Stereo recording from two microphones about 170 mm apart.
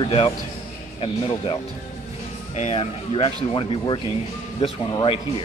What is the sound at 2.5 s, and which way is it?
Speech, 40° left (ahead or behind).